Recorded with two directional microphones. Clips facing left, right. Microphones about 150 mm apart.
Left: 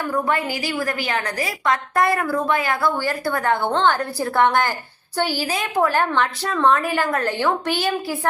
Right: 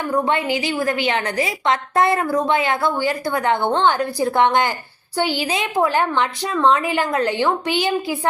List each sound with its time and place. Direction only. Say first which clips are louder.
0.1 s a woman's voice: right 4 dB; 20° right (ahead or behind)